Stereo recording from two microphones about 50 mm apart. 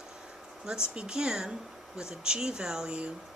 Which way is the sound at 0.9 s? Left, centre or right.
Centre.